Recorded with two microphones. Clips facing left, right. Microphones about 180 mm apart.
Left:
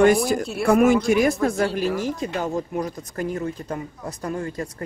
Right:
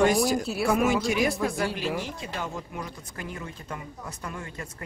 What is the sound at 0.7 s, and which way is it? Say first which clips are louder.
Speech: left 8 dB; 55° left (ahead or behind).